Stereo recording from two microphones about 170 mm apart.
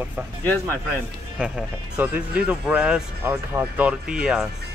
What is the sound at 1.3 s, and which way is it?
Speech, 5° right (ahead or behind).